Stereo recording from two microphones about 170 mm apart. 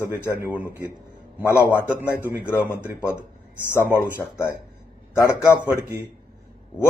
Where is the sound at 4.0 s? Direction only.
15° left (ahead or behind).